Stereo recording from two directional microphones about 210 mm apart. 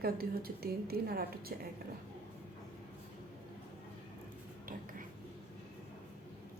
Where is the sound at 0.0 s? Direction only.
45° right (ahead or behind).